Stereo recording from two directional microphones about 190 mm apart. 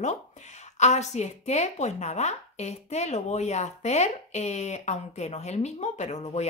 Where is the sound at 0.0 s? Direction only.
40° left (ahead or behind).